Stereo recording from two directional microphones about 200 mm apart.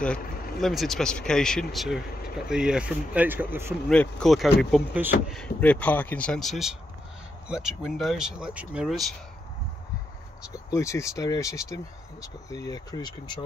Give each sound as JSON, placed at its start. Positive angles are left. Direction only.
{"t": 0.6, "sound": "speech", "side_deg": 0}
{"t": 3.9, "sound": "speech", "side_deg": 5}
{"t": 10.7, "sound": "speech", "side_deg": 15}